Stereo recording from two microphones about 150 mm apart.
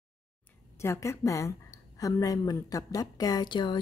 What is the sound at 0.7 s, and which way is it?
A woman's voice, 20° left (ahead or behind).